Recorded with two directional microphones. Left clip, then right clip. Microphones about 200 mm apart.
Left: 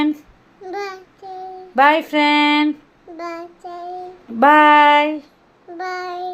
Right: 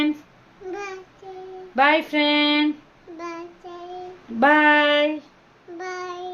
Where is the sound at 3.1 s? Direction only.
20° left (ahead or behind).